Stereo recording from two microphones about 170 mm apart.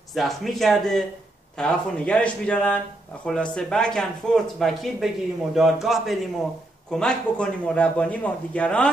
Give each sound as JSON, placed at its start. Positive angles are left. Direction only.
{"t": 0.1, "sound": "speech", "side_deg": 0}